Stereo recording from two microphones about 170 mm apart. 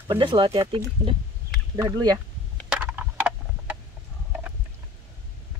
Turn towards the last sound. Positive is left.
turn(degrees=-5)  # may be behind; listen again after turning